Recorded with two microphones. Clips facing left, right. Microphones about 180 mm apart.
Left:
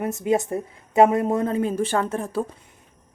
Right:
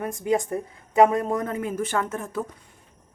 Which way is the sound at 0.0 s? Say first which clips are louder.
Left 2 dB; 25° left (ahead or behind).